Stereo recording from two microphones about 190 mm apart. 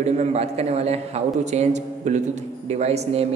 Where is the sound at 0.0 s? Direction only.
35° right (ahead or behind).